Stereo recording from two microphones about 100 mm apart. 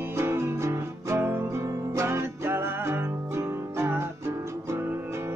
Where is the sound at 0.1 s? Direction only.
25° right (ahead or behind).